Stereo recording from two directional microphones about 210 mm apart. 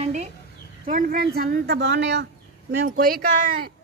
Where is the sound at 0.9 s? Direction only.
40° right (ahead or behind).